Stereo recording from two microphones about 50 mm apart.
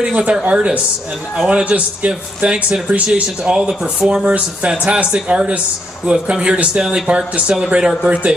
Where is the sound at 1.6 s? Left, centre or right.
Right.